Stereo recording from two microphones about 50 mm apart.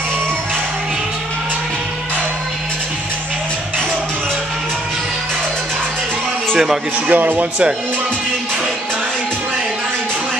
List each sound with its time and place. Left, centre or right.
7.1 s speech: right